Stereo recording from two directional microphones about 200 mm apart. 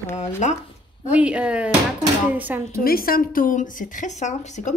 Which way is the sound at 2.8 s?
50° left (ahead or behind).